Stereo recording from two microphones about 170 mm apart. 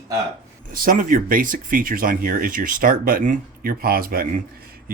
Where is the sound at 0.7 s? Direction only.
55° right (ahead or behind).